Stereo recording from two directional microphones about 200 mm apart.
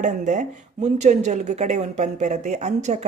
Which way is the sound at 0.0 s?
40° right (ahead or behind).